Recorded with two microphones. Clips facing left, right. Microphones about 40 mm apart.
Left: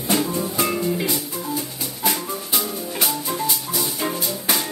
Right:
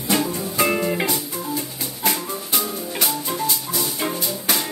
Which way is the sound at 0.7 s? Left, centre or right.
Right.